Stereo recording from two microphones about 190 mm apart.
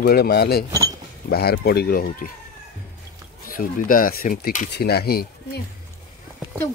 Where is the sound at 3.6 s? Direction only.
45° left (ahead or behind).